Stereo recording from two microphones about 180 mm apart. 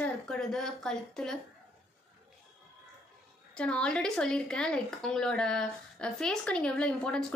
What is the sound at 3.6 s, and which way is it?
Speech, 5° left (ahead or behind).